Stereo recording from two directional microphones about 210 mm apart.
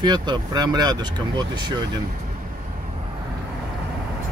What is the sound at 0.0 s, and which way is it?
Speech, 20° right (ahead or behind).